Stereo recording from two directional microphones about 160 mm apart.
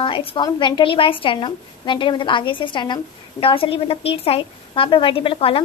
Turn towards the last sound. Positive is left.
turn(degrees=35)  # may be behind; listen again after turning